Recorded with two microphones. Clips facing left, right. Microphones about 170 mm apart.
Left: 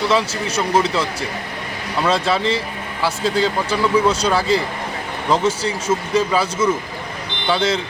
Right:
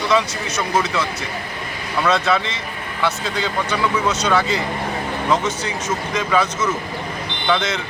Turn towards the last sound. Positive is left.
turn(degrees=30)  # may be behind; listen again after turning